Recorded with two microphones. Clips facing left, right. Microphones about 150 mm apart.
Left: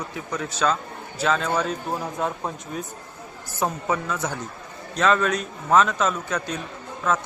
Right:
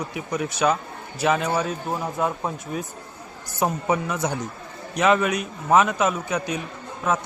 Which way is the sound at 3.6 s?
15° right (ahead or behind).